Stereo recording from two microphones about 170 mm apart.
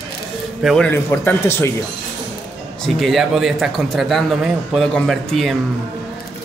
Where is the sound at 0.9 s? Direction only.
15° left (ahead or behind).